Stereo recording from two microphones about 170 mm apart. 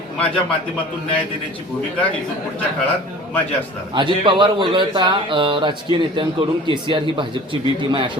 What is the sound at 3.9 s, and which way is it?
A man's voice, 30° right (ahead or behind).